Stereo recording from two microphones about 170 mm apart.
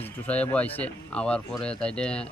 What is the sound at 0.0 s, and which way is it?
Speech, 10° left (ahead or behind).